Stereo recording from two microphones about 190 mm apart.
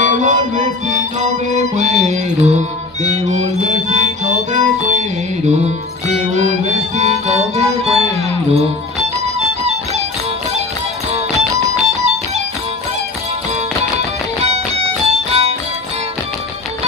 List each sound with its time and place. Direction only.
0.0 s music: 40° right (ahead or behind)
11.8 s music: 35° right (ahead or behind)
14.4 s music: 35° right (ahead or behind)